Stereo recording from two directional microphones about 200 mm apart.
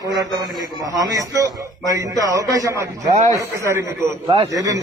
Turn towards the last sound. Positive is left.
turn(degrees=-15)  # may be behind; listen again after turning